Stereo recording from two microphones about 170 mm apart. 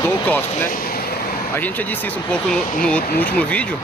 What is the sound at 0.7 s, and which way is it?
Vehicle, 60° left (ahead or behind).